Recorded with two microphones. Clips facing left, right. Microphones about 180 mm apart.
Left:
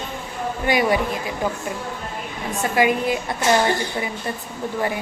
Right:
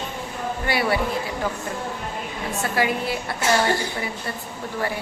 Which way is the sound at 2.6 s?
15° left (ahead or behind).